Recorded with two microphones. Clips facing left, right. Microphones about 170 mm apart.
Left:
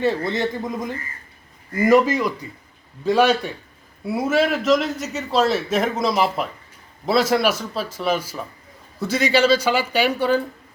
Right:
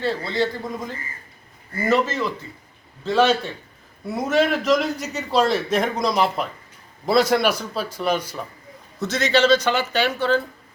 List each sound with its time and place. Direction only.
0.3 s a man's voice: 20° left (ahead or behind)